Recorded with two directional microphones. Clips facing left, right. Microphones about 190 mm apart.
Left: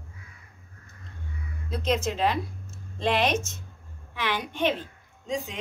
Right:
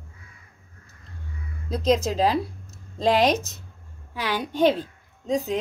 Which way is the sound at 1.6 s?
35° right (ahead or behind).